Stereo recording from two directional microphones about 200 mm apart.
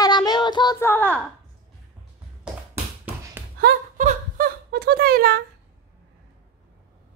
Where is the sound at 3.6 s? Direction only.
45° right (ahead or behind).